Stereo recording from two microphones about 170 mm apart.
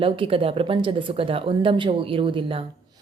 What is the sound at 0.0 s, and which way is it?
Speech, 35° right (ahead or behind).